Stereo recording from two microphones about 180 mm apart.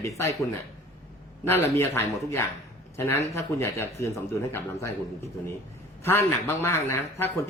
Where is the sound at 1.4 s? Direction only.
15° left (ahead or behind).